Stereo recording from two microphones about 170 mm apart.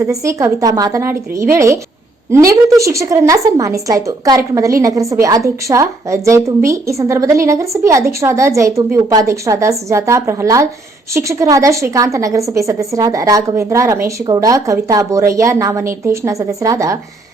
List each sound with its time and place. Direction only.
0.0 s a woman's voice: 20° right (ahead or behind)